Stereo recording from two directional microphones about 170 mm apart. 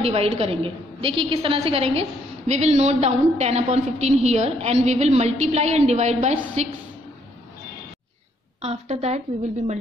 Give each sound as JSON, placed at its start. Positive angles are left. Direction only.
{"t": 0.0, "sound": "a woman's voice", "side_deg": -35}
{"t": 8.6, "sound": "a woman's voice", "side_deg": -40}